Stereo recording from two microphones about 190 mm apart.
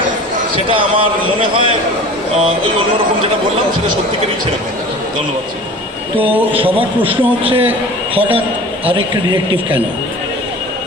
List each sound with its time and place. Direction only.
0.5 s a man's voice: 25° right (ahead or behind)
6.5 s a man's voice: 30° right (ahead or behind)
7.7 s a man's voice: 10° right (ahead or behind)
9.0 s a man's voice: 25° right (ahead or behind)